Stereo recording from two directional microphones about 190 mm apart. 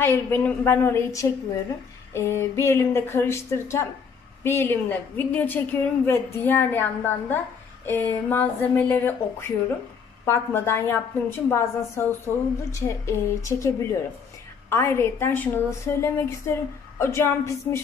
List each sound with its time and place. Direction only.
0.0 s a woman's voice: 10° left (ahead or behind)